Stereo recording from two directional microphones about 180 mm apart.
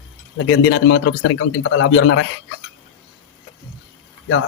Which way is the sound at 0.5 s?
90° left.